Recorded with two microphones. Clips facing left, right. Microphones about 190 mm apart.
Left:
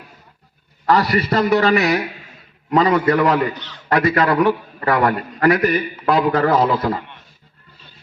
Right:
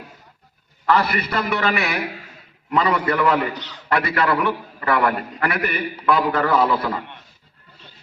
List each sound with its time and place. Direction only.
0.9 s a man's voice: 40° left (ahead or behind)